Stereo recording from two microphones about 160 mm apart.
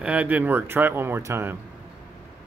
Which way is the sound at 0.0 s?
10° right (ahead or behind).